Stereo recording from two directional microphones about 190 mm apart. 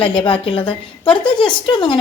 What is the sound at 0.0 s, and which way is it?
A woman's voice, 25° left (ahead or behind).